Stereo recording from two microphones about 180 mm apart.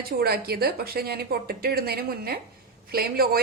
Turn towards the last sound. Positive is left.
turn(degrees=-60)  # may be behind; listen again after turning